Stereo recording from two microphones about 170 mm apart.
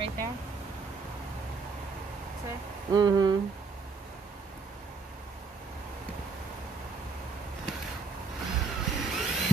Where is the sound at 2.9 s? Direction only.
25° right (ahead or behind).